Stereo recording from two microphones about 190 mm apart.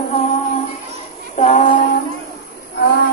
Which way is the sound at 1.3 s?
40° left (ahead or behind).